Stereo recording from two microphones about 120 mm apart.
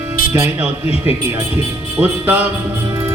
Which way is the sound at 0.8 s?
55° left (ahead or behind).